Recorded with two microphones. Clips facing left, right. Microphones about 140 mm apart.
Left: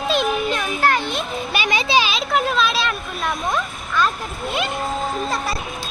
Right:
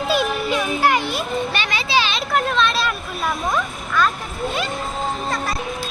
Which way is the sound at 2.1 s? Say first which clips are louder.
Even; centre (ahead or behind).